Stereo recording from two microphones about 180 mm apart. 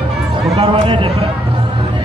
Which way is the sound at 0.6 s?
30° right (ahead or behind).